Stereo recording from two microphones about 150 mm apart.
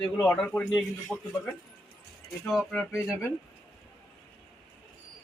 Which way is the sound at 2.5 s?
Centre (ahead or behind).